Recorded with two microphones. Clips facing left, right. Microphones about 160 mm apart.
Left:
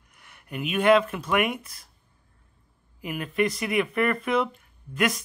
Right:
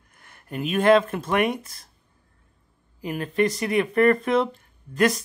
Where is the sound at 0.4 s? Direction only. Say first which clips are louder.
Right 3 dB; 35° right (ahead or behind).